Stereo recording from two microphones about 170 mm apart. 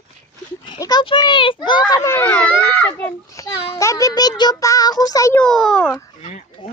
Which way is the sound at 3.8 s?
20° left (ahead or behind).